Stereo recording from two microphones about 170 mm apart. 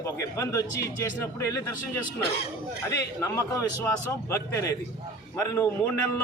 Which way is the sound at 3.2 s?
20° left (ahead or behind).